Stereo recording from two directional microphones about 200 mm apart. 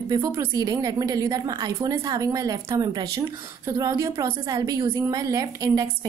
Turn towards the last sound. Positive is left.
turn(degrees=-15)  # may be behind; listen again after turning